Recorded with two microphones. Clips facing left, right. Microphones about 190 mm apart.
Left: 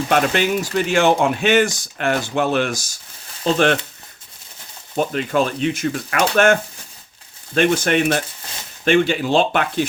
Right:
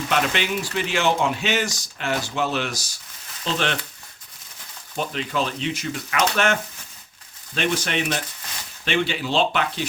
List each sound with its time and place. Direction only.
0.1 s speech: 45° left (ahead or behind)
4.9 s speech: 50° left (ahead or behind)